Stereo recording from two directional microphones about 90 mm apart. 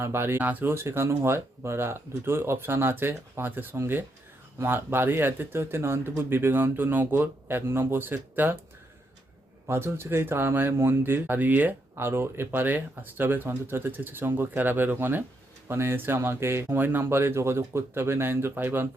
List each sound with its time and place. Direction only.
0.0 s speech: 25° right (ahead or behind)
9.6 s speech: 25° right (ahead or behind)